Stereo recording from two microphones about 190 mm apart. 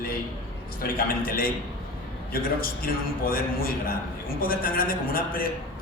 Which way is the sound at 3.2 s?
50° left (ahead or behind).